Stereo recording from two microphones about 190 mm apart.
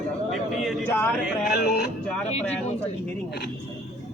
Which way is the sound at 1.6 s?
55° left (ahead or behind).